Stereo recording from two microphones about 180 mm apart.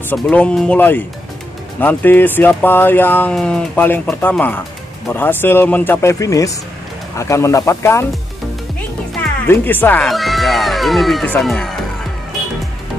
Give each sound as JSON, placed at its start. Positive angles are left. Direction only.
{"t": 0.1, "sound": "speech", "side_deg": 5}
{"t": 9.5, "sound": "speech", "side_deg": 10}